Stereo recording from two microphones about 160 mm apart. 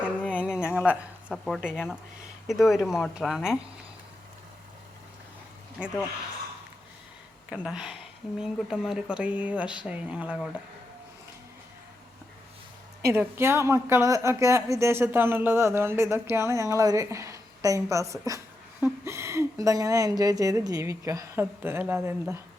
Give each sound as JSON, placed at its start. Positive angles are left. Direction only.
{"t": 0.0, "sound": "a sound", "side_deg": -5}
{"t": 0.9, "sound": "speech", "side_deg": 0}
{"t": 5.8, "sound": "speech", "side_deg": -5}
{"t": 7.5, "sound": "speech", "side_deg": -5}
{"t": 13.0, "sound": "speech", "side_deg": -15}